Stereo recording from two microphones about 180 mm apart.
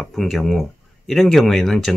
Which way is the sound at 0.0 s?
Centre (ahead or behind).